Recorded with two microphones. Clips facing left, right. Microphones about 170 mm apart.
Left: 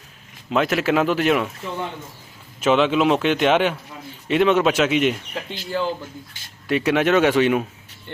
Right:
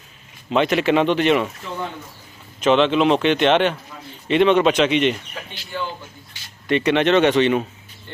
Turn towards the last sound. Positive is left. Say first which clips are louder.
# right 1 dB
turn(degrees=5)  # may be behind; listen again after turning